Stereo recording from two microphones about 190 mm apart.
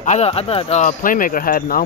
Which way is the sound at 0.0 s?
35° left (ahead or behind).